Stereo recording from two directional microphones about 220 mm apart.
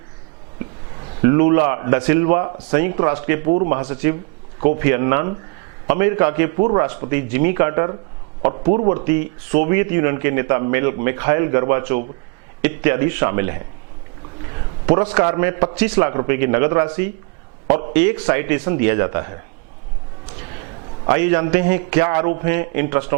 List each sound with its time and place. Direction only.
1.2 s speech: 15° right (ahead or behind)
14.8 s speech: 15° right (ahead or behind)
21.1 s speech: 15° right (ahead or behind)